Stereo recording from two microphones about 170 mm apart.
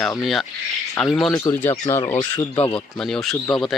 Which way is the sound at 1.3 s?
15° left (ahead or behind).